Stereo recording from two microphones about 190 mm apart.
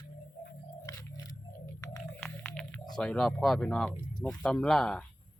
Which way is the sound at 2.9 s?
Centre (ahead or behind).